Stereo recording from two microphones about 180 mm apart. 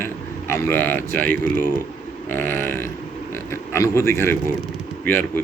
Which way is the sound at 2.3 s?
10° left (ahead or behind).